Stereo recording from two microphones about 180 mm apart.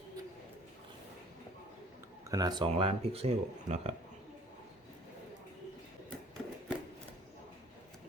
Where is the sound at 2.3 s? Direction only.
20° right (ahead or behind).